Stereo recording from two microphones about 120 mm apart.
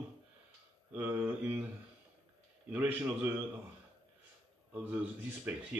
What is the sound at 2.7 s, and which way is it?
Speech, 15° right (ahead or behind).